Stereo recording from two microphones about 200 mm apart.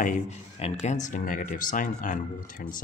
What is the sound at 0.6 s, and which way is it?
Speech, 35° left (ahead or behind).